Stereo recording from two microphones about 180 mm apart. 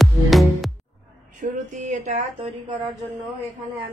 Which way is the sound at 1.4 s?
45° right (ahead or behind).